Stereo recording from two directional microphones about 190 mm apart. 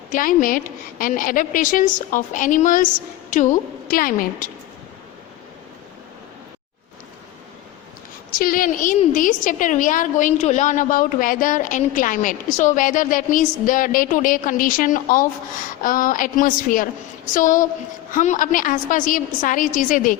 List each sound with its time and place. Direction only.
0.1 s a woman's voice: 45° left (ahead or behind)
8.4 s a woman's voice: 50° left (ahead or behind)